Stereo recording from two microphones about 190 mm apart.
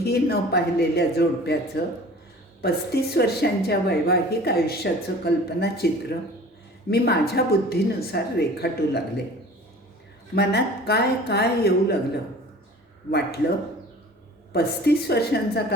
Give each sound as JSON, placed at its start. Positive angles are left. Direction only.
{"t": 0.0, "sound": "a woman's voice", "side_deg": 55}
{"t": 6.9, "sound": "a woman's voice", "side_deg": 55}
{"t": 10.3, "sound": "a woman's voice", "side_deg": 60}
{"t": 14.5, "sound": "a woman's voice", "side_deg": 60}